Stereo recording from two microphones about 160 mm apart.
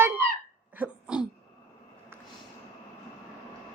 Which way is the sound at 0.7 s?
5° right (ahead or behind).